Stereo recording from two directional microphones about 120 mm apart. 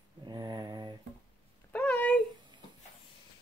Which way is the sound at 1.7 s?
15° left (ahead or behind).